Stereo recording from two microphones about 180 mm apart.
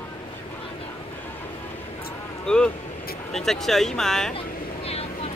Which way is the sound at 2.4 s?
5° left (ahead or behind).